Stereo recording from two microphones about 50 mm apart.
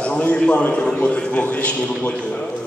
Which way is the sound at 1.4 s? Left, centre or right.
Left.